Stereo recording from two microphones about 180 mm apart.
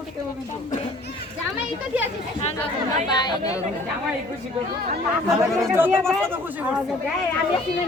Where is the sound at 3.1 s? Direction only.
25° left (ahead or behind).